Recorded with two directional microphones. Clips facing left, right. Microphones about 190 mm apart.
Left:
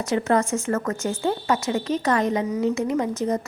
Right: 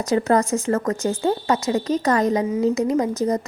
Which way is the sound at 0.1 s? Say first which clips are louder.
Right 3 dB; 40° right (ahead or behind).